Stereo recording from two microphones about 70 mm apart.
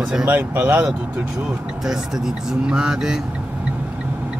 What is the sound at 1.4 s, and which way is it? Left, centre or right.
Speech, centre.